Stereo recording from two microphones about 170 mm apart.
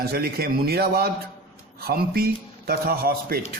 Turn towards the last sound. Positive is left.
turn(degrees=-60)  # may be behind; listen again after turning